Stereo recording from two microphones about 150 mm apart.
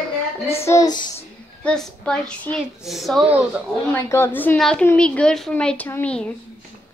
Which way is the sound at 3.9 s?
15° left (ahead or behind).